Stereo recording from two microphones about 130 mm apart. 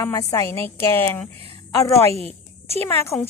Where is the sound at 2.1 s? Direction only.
50° left (ahead or behind).